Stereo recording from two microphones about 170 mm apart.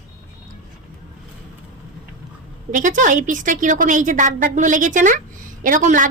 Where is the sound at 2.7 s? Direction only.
50° right (ahead or behind).